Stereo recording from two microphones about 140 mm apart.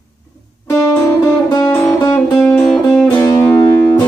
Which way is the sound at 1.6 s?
15° left (ahead or behind).